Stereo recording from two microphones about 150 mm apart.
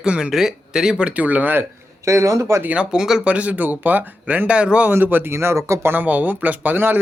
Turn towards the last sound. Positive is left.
turn(degrees=-15)  # may be behind; listen again after turning